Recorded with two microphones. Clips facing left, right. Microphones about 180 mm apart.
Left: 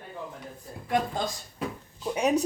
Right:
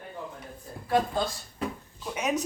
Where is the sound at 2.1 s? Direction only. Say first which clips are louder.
Left 4 dB; 35° left (ahead or behind).